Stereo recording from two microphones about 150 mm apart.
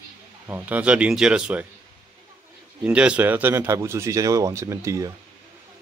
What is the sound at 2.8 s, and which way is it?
Speech, 5° right (ahead or behind).